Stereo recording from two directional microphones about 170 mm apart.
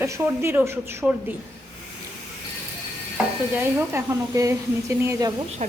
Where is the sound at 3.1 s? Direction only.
15° right (ahead or behind).